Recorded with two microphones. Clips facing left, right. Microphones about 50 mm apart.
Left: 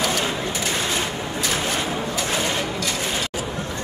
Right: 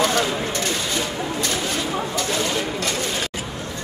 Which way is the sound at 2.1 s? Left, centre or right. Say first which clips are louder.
Even; centre.